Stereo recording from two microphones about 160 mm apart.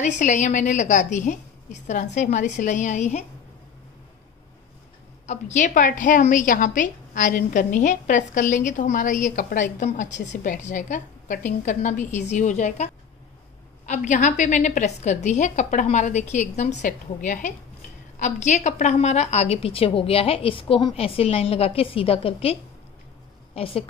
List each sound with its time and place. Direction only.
0.0 s a woman's voice: 50° left (ahead or behind)
5.2 s a woman's voice: 50° left (ahead or behind)